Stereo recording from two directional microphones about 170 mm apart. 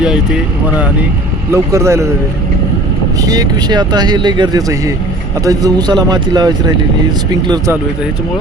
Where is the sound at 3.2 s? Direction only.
25° right (ahead or behind).